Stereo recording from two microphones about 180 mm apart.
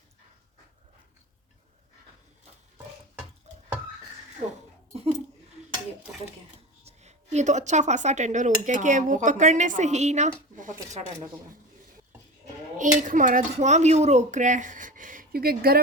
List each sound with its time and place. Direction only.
6.8 s speech: 40° right (ahead or behind)
12.7 s speech: 45° right (ahead or behind)